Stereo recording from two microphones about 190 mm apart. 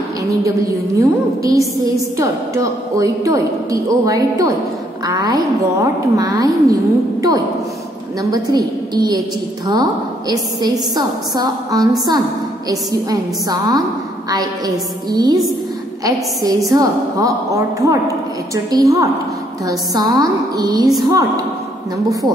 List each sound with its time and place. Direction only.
0.9 s a woman's voice: 15° right (ahead or behind)